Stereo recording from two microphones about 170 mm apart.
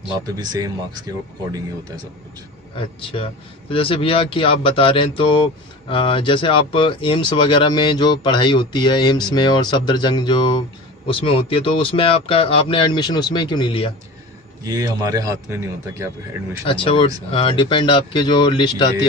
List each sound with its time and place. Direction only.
0.4 s a man's voice: 25° right (ahead or behind)
3.0 s speech: 30° left (ahead or behind)
14.6 s a man's voice: 20° right (ahead or behind)
16.6 s speech: 30° left (ahead or behind)